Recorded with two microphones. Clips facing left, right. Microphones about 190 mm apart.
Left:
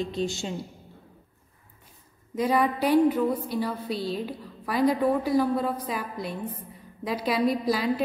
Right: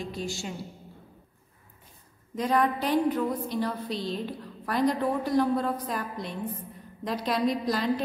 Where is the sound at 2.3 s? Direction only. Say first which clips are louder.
Left 1 dB; 5° left (ahead or behind).